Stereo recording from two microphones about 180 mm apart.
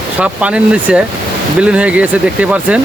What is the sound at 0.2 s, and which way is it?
Speech, 5° right (ahead or behind).